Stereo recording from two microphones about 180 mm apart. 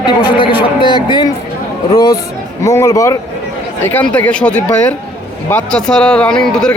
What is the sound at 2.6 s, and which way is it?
Speech, 15° left (ahead or behind).